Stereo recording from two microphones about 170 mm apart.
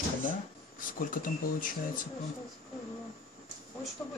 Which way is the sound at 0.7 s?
55° left (ahead or behind).